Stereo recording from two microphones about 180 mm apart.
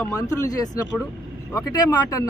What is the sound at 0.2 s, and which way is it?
Speech, 20° left (ahead or behind).